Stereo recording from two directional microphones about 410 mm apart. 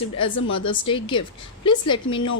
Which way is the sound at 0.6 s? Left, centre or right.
Centre.